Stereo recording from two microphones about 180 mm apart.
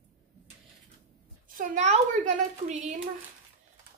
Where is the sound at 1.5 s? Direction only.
40° right (ahead or behind).